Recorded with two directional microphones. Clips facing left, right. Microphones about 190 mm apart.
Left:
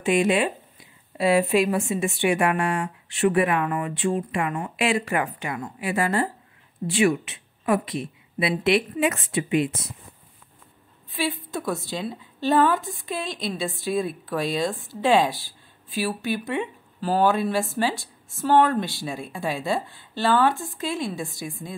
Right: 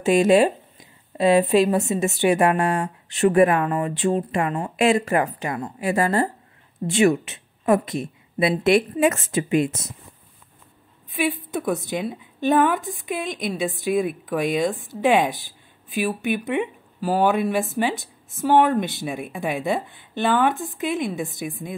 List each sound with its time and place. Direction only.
0.0 s a woman's voice: 40° right (ahead or behind)
11.1 s a woman's voice: 15° right (ahead or behind)